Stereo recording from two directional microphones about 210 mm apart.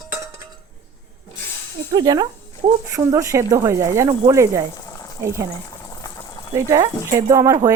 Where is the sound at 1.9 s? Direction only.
20° right (ahead or behind).